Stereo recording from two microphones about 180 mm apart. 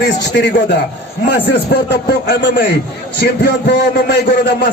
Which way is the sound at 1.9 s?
65° left (ahead or behind).